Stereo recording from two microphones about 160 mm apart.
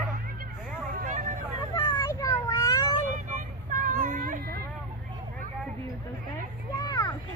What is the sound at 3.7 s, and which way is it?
Child singing, 65° right (ahead or behind).